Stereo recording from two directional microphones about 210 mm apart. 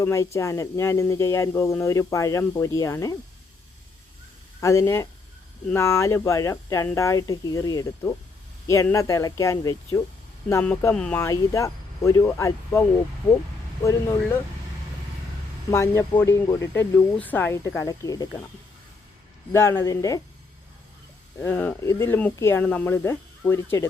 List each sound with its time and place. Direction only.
0.0 s speech: 15° left (ahead or behind)
4.6 s speech: 15° left (ahead or behind)
13.8 s speech: 15° left (ahead or behind)
15.7 s speech: 10° left (ahead or behind)
19.5 s speech: 10° left (ahead or behind)
21.4 s speech: 10° left (ahead or behind)